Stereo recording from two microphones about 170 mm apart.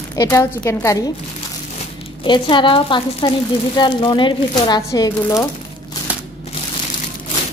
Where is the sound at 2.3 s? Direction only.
30° left (ahead or behind).